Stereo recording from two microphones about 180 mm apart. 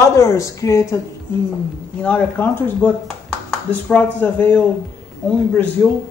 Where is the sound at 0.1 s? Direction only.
15° left (ahead or behind).